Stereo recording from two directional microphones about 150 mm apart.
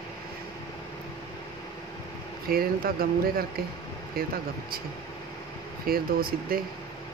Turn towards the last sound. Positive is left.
turn(degrees=-80)